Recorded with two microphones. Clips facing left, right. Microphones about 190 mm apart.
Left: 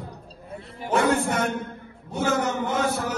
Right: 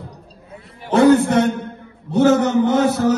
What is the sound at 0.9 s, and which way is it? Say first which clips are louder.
A man's voice: right 10 dB; 35° right (ahead or behind).